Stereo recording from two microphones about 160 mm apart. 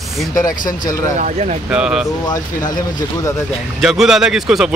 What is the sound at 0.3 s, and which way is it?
Speech, 20° left (ahead or behind).